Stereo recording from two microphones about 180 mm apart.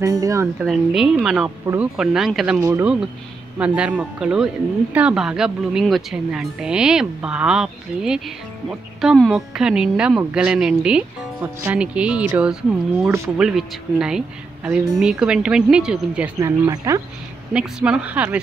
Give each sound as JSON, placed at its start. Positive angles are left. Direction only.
{"t": 0.0, "sound": "speech", "side_deg": -15}
{"t": 0.6, "sound": "speech", "side_deg": 0}
{"t": 2.6, "sound": "speech", "side_deg": -15}
{"t": 16.3, "sound": "speech", "side_deg": -20}
{"t": 17.5, "sound": "speech", "side_deg": -5}